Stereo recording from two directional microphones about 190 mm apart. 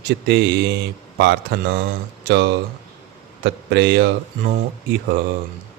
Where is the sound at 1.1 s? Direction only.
60° right (ahead or behind).